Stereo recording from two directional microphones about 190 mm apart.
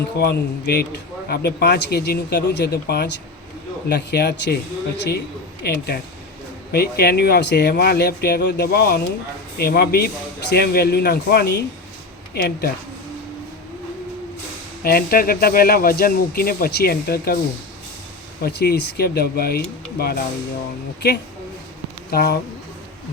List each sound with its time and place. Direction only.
0.2 s a man's voice: 55° left (ahead or behind)
14.8 s speech: 50° left (ahead or behind)
18.4 s a man's voice: 60° left (ahead or behind)